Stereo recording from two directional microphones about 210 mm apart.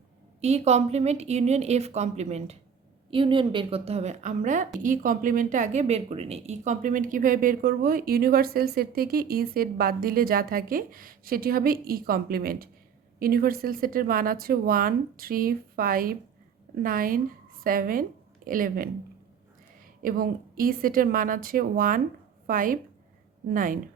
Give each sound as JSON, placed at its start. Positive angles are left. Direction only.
{"t": 0.4, "sound": "a woman's voice", "side_deg": -30}
{"t": 20.0, "sound": "speech", "side_deg": -45}